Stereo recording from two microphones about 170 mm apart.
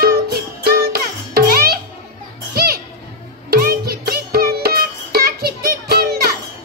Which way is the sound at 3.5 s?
60° right (ahead or behind).